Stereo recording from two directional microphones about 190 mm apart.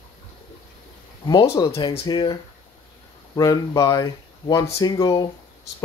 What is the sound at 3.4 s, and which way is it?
Speech, 20° left (ahead or behind).